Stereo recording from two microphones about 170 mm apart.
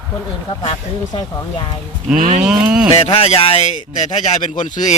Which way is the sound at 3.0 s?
35° left (ahead or behind).